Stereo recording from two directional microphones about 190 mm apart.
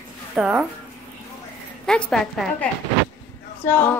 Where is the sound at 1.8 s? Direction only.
5° left (ahead or behind).